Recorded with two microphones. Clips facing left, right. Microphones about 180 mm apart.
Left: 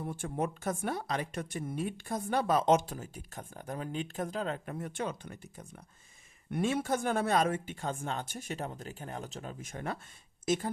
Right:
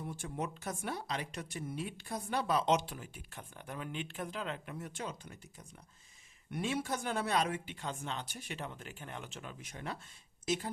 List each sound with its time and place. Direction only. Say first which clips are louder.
0.0 s speech: left 5 dB; 50° left (ahead or behind)